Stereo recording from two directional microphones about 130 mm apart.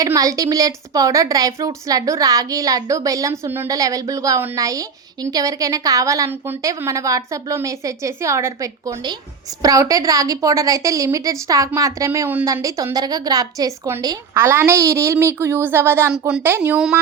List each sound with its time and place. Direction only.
0.0 s a woman's voice: 25° right (ahead or behind)
16.1 s speech: 10° right (ahead or behind)